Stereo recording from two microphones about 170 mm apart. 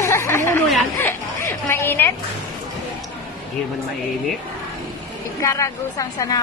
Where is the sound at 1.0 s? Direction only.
15° left (ahead or behind).